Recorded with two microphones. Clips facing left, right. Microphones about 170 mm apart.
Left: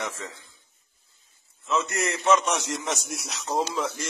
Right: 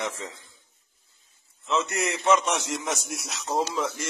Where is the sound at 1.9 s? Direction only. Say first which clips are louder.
Left 1 dB; 15° right (ahead or behind).